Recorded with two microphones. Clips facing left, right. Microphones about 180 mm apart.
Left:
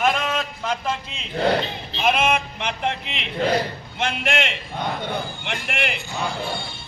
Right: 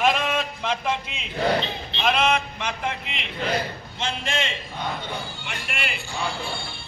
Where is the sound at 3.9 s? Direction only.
60° left (ahead or behind).